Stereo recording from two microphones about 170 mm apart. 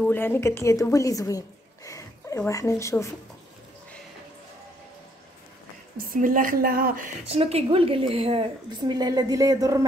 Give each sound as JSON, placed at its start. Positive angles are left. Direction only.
{"t": 0.0, "sound": "a woman's voice", "side_deg": 10}
{"t": 5.9, "sound": "a woman's voice", "side_deg": -55}
{"t": 7.2, "sound": "a woman's voice", "side_deg": -35}